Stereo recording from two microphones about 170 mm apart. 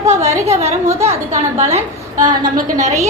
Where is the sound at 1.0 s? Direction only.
40° right (ahead or behind).